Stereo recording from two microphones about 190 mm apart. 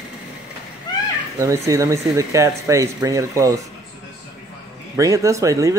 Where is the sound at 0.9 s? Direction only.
20° left (ahead or behind).